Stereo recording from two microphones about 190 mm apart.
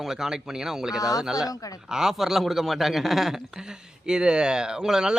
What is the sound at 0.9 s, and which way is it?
Speech, 20° left (ahead or behind).